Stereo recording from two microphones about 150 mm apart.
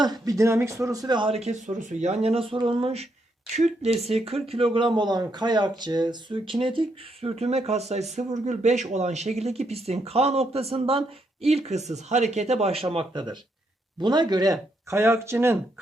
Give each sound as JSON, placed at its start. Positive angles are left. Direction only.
{"t": 0.0, "sound": "speech", "side_deg": -25}